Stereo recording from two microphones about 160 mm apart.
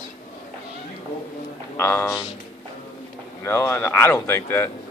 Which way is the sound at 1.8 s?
15° left (ahead or behind).